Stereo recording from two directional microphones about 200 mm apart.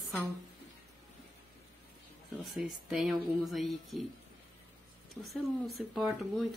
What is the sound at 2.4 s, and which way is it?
Speech, centre (ahead or behind).